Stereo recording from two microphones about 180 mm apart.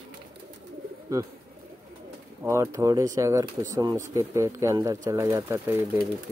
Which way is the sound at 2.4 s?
15° right (ahead or behind).